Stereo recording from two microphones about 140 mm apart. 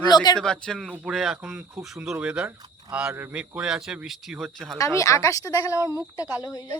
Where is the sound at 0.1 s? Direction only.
30° left (ahead or behind).